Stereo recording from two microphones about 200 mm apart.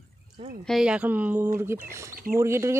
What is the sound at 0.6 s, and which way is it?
Speech, 5° right (ahead or behind).